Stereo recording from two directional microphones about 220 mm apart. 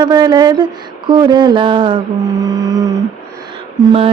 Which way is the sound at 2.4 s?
15° right (ahead or behind).